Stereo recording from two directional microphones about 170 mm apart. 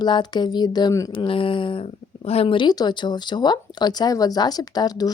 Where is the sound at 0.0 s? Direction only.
25° left (ahead or behind).